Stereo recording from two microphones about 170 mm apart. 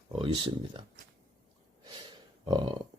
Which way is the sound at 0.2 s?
30° right (ahead or behind).